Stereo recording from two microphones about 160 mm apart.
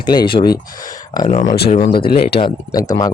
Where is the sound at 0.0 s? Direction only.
30° left (ahead or behind).